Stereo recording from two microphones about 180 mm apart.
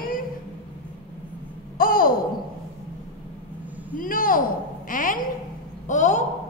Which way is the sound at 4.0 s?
50° left (ahead or behind).